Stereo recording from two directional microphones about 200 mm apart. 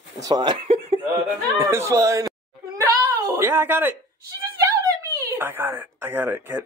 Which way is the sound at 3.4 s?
10° right (ahead or behind).